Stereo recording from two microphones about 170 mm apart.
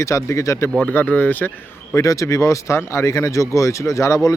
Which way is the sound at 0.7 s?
5° left (ahead or behind).